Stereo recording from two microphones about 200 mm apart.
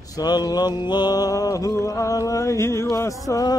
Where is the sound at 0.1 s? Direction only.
20° left (ahead or behind).